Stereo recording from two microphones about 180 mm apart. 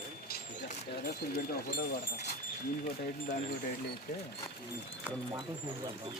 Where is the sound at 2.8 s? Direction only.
50° left (ahead or behind).